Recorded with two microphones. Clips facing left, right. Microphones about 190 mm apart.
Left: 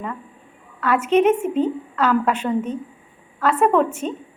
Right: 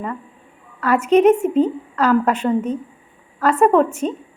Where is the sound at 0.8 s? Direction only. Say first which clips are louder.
Right 3 dB; 5° left (ahead or behind).